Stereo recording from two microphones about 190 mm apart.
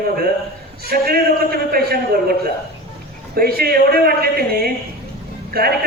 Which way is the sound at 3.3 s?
55° right (ahead or behind).